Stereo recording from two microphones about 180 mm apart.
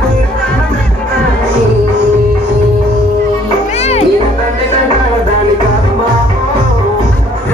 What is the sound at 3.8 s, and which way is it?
Music, 35° left (ahead or behind).